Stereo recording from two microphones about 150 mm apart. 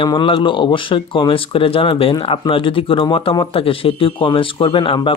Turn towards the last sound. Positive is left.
turn(degrees=35)  # may be behind; listen again after turning